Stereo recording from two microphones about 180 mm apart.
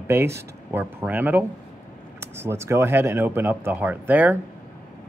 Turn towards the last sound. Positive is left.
turn(degrees=-10)  # may be behind; listen again after turning